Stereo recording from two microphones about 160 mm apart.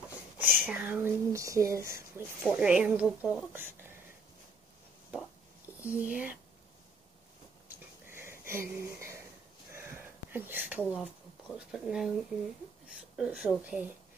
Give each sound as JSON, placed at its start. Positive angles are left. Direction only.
{"t": 0.4, "sound": "speech", "side_deg": -10}
{"t": 2.5, "sound": "speech", "side_deg": -5}
{"t": 5.9, "sound": "speech", "side_deg": -5}
{"t": 7.6, "sound": "a sound", "side_deg": -15}
{"t": 11.5, "sound": "speech", "side_deg": -5}